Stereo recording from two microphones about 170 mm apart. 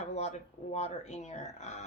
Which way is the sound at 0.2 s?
40° left (ahead or behind).